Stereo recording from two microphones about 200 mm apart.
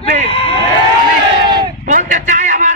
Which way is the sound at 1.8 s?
40° right (ahead or behind).